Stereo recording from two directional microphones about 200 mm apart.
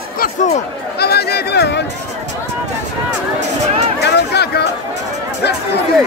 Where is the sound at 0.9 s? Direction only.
55° left (ahead or behind).